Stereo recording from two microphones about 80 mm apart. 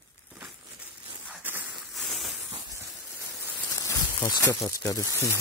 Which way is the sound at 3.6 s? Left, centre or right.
Left.